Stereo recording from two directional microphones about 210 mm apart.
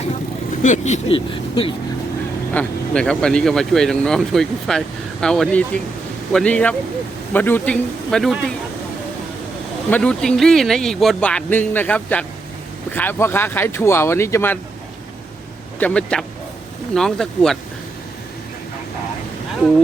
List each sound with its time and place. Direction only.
0.6 s speech: 35° left (ahead or behind)
2.5 s speech: 5° left (ahead or behind)
9.9 s speech: 5° left (ahead or behind)
15.8 s speech: 5° left (ahead or behind)